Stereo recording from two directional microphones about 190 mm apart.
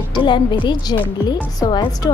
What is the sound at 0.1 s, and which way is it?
A woman's voice, 25° left (ahead or behind).